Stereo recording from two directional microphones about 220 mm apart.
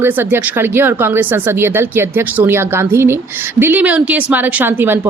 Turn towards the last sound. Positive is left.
turn(degrees=-10)  # may be behind; listen again after turning